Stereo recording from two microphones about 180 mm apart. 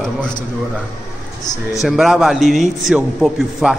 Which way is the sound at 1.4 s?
20° left (ahead or behind).